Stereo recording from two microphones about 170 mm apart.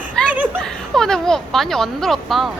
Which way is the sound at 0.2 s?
5° left (ahead or behind).